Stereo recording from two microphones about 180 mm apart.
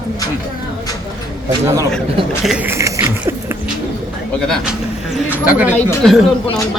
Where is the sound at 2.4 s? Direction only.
5° right (ahead or behind).